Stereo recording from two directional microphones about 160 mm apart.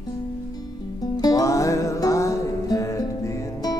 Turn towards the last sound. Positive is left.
turn(degrees=20)  # may be behind; listen again after turning